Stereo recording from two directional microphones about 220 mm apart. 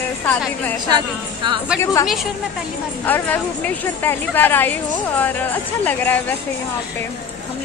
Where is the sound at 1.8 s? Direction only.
15° left (ahead or behind).